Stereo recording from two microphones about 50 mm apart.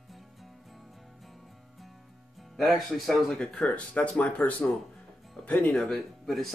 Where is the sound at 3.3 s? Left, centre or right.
Centre; by 5.7 s left.